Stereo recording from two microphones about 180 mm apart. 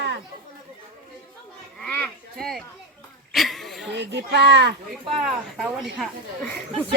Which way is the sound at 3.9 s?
70° right (ahead or behind).